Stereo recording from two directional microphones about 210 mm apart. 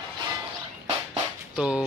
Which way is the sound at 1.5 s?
5° right (ahead or behind).